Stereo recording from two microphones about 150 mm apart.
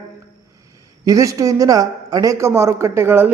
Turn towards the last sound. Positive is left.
turn(degrees=-10)  # may be behind; listen again after turning